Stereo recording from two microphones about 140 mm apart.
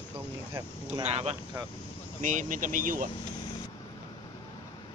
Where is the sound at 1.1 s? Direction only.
50° right (ahead or behind).